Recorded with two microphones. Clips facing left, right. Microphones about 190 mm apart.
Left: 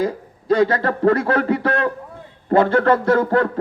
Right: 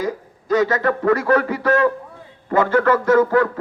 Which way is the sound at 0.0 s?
30° left (ahead or behind).